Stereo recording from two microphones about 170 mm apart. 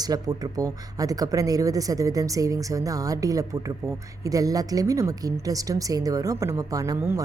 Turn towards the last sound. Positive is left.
turn(degrees=-20)  # may be behind; listen again after turning